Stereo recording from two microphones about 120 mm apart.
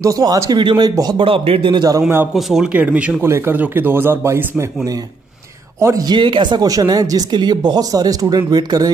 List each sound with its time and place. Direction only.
0.0 s speech: 30° right (ahead or behind)
1.2 s speech: 50° right (ahead or behind)
2.0 s speech: 20° right (ahead or behind)
2.3 s speech: 5° right (ahead or behind); by 8.9 s 35° right (ahead or behind)